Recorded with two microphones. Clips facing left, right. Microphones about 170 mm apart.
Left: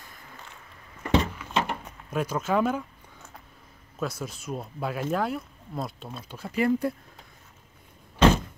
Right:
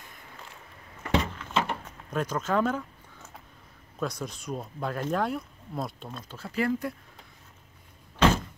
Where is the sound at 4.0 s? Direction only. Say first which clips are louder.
Even; 5° left (ahead or behind).